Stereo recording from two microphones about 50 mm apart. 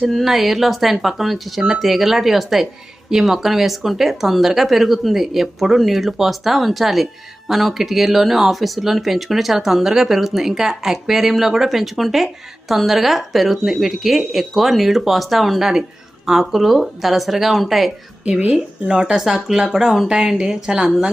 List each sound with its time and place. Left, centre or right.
0.0 s speech: centre
18.3 s speech: right